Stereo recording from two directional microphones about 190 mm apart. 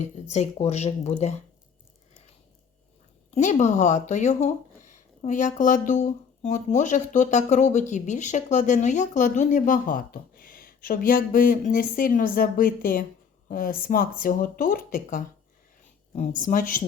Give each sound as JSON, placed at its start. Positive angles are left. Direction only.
{"t": 0.0, "sound": "speech", "side_deg": 35}
{"t": 3.3, "sound": "speech", "side_deg": 40}